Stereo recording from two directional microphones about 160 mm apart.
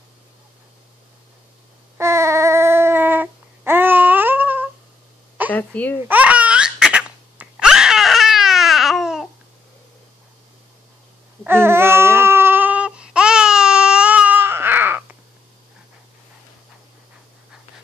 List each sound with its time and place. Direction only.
2.0 s a sound: 15° right (ahead or behind)
5.5 s a woman's voice: 10° left (ahead or behind)
6.0 s laughter: 10° right (ahead or behind)
11.4 s baby cry: 15° right (ahead or behind)